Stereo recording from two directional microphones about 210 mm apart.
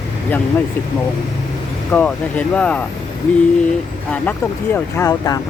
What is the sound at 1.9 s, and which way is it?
Speech, 5° left (ahead or behind).